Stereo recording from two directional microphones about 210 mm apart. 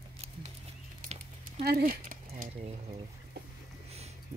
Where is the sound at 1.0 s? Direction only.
30° right (ahead or behind).